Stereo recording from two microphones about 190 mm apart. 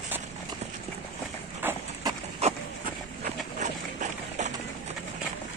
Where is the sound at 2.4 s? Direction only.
35° right (ahead or behind).